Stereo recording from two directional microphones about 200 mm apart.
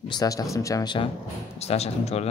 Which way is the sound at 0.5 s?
15° left (ahead or behind).